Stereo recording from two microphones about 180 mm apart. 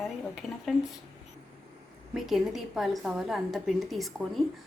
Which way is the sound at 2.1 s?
Centre (ahead or behind).